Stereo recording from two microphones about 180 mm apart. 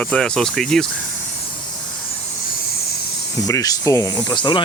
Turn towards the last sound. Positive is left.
turn(degrees=25)  # may be behind; listen again after turning